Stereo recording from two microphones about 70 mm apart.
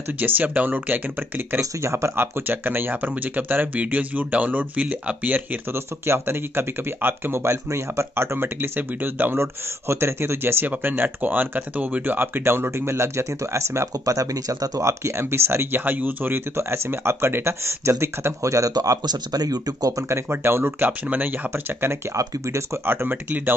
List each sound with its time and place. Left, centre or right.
0.2 s speech: right
1.6 s speech: right
2.4 s speech: right
5.7 s speech: right
16.5 s speech: right
18.8 s speech: right
20.1 s speech: right
22.1 s speech: right
22.8 s speech: right